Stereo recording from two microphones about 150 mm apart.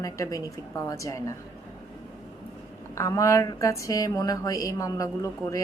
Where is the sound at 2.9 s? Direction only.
20° left (ahead or behind).